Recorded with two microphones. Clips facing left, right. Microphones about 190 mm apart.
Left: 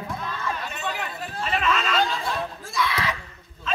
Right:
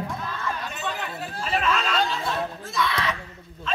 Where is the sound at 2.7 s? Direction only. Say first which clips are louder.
Even; centre (ahead or behind).